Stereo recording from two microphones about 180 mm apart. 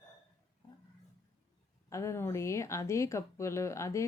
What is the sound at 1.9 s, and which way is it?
Speech, 15° left (ahead or behind).